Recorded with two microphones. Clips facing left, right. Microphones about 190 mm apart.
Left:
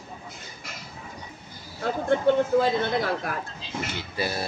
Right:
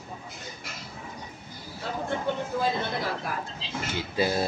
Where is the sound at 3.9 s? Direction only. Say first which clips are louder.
Right 6 dB; 15° right (ahead or behind).